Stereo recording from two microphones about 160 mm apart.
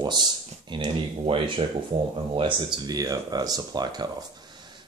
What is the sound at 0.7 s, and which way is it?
Speech, 30° right (ahead or behind).